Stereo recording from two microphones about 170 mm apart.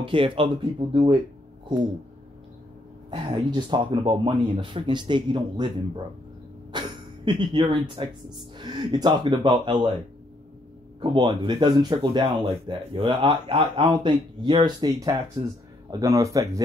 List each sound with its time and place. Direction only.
0.0 s speech: 30° right (ahead or behind)
3.1 s speech: 30° right (ahead or behind)
6.7 s a sound: 25° right (ahead or behind)
7.2 s speech: 30° right (ahead or behind)
11.0 s speech: 25° right (ahead or behind)